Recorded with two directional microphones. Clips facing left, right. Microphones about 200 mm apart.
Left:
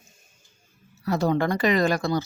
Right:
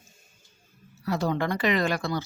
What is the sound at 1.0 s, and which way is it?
Speech, 45° left (ahead or behind).